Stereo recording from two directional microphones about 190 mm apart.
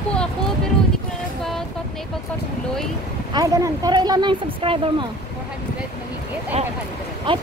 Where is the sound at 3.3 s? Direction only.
15° right (ahead or behind).